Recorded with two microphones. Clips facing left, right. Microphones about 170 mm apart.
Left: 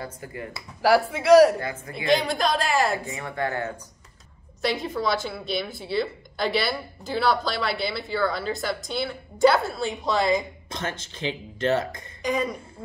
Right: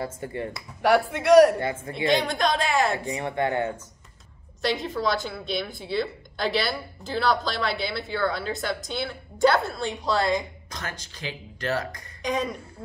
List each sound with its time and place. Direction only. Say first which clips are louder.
0.0 s speech: right 4 dB; 30° right (ahead or behind)
0.5 s a woman's voice: left 1 dB; centre (ahead or behind)
1.6 s speech: right 4 dB; 25° right (ahead or behind)
2.0 s a woman's voice: left 1 dB; centre (ahead or behind)
3.1 s speech: right 3 dB; 25° right (ahead or behind)
4.6 s a woman's voice: even; centre (ahead or behind)
10.7 s speech: left 6 dB; 25° left (ahead or behind)
12.2 s speech: left 1 dB; centre (ahead or behind)